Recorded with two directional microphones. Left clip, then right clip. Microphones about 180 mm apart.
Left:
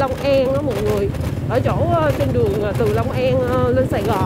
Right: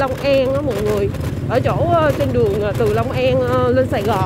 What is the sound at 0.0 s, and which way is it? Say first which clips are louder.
Speech: right 1 dB; 10° left (ahead or behind).